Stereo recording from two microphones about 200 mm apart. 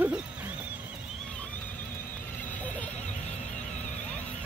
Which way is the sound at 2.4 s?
5° left (ahead or behind).